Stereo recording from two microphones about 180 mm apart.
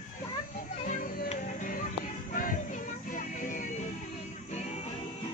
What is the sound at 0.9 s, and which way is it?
Music, 45° left (ahead or behind).